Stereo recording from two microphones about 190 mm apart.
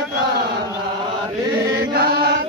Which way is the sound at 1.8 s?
55° right (ahead or behind).